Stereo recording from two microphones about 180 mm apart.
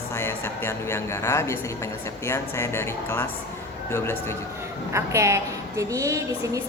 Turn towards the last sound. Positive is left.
turn(degrees=-15)  # may be behind; listen again after turning